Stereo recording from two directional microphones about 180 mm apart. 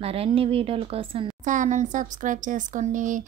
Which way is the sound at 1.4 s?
45° right (ahead or behind).